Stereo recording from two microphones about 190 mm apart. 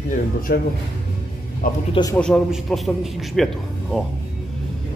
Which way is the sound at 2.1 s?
5° left (ahead or behind).